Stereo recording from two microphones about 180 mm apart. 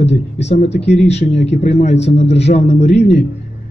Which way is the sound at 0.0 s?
35° left (ahead or behind).